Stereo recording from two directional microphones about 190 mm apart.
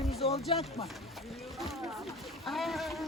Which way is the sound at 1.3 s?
Centre (ahead or behind).